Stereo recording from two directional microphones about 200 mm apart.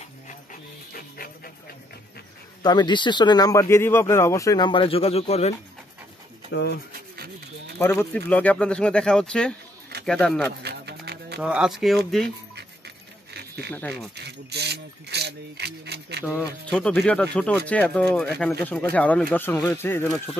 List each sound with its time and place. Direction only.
0.3 s dog: 45° left (ahead or behind)
2.6 s speech: 20° left (ahead or behind)
6.5 s speech: 55° left (ahead or behind)
6.9 s rub: 50° right (ahead or behind)
7.8 s speech: 10° left (ahead or behind)
10.6 s a sound: 55° right (ahead or behind)
11.4 s speech: 5° right (ahead or behind)
12.5 s dog: 55° right (ahead or behind)
13.7 s speech: centre (ahead or behind)
14.1 s speech: 55° right (ahead or behind)
16.7 s speech: 5° left (ahead or behind)